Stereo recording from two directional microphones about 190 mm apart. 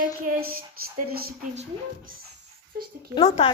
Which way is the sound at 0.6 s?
50° right (ahead or behind).